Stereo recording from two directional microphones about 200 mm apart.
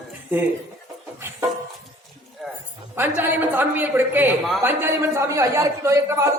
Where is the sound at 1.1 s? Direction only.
15° right (ahead or behind).